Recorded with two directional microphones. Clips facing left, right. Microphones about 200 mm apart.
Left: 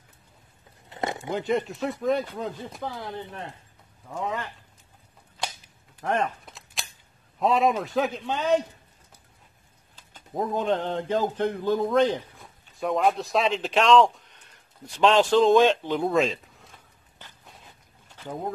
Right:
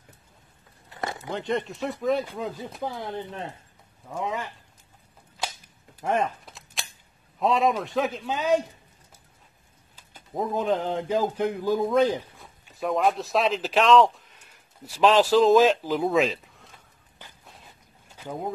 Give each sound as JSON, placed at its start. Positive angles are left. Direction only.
{"t": 0.8, "sound": "a sound", "side_deg": 20}
{"t": 1.3, "sound": "speech", "side_deg": 0}
{"t": 4.1, "sound": "speech", "side_deg": -10}
{"t": 5.9, "sound": "speech", "side_deg": -10}
{"t": 6.4, "sound": "cap gun", "side_deg": 0}
{"t": 7.3, "sound": "speech", "side_deg": 0}
{"t": 9.9, "sound": "speech", "side_deg": -5}
{"t": 18.1, "sound": "boat", "side_deg": -10}